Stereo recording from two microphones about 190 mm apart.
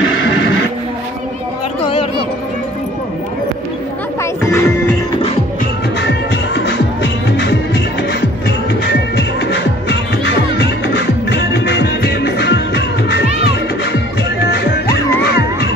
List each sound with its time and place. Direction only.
0.0 s neigh: 90° left
4.2 s music: 15° left (ahead or behind)
6.5 s music: 70° left (ahead or behind)
9.4 s music: 65° left (ahead or behind)
14.5 s music: 55° left (ahead or behind)